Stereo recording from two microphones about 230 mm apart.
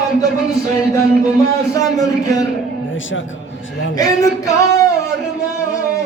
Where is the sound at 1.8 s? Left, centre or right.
Centre.